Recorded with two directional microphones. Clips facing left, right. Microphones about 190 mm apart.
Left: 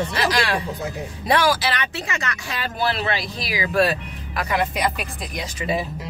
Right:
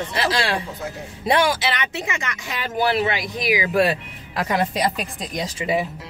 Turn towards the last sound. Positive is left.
turn(degrees=-20)  # may be behind; listen again after turning